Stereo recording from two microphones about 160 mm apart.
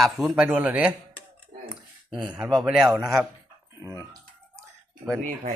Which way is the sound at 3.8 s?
20° right (ahead or behind).